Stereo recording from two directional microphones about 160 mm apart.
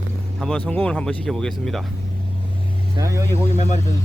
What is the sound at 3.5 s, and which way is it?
Speech, 45° left (ahead or behind).